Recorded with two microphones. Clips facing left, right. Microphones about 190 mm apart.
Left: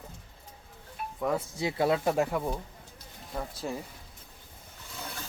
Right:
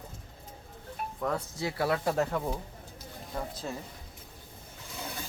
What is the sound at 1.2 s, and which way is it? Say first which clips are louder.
Speech: left 3 dB; 15° left (ahead or behind).